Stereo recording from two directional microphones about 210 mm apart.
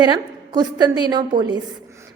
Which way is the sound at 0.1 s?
20° right (ahead or behind).